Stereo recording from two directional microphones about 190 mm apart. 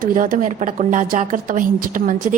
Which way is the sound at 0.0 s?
45° right (ahead or behind).